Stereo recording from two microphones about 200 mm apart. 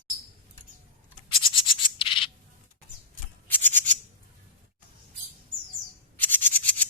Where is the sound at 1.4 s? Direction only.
25° left (ahead or behind).